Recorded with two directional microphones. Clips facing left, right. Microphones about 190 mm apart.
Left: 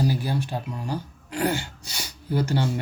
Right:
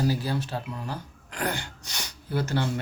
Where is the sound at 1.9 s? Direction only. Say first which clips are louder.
Left 5 dB; 10° left (ahead or behind).